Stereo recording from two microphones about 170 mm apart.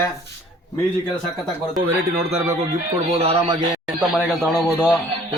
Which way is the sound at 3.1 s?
35° right (ahead or behind).